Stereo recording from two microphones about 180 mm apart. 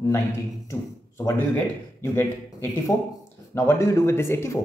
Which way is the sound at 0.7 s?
15° left (ahead or behind).